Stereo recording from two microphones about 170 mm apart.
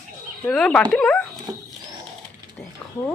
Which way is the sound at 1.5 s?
20° right (ahead or behind).